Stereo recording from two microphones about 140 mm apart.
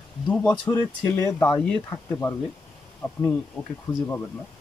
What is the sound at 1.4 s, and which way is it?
Speech, 5° left (ahead or behind).